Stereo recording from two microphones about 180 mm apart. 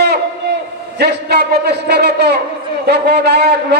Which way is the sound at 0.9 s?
65° right (ahead or behind).